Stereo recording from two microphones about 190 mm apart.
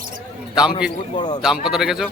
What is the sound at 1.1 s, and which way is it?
Speech, 20° left (ahead or behind).